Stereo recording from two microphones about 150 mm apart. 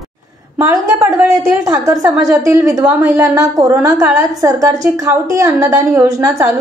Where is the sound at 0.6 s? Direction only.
20° right (ahead or behind).